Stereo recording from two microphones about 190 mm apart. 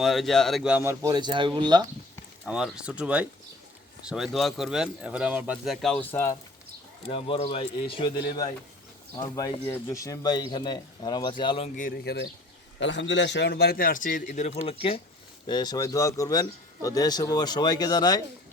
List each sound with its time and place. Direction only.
0.0 s speech: centre (ahead or behind); by 1.8 s 25° right (ahead or behind)
2.4 s speech: 5° right (ahead or behind)
7.0 s speech: 30° left (ahead or behind)
11.8 s a man's voice: 50° left (ahead or behind)
12.8 s a man's voice: 75° left (ahead or behind); by 18.2 s 20° left (ahead or behind)